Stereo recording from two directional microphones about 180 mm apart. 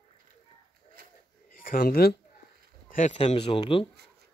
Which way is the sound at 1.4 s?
50° left (ahead or behind).